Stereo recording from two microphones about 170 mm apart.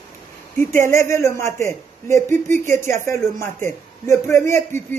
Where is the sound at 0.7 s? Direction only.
15° left (ahead or behind).